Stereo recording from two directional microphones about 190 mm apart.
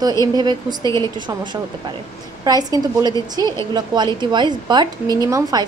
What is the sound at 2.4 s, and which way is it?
Speech, 20° right (ahead or behind).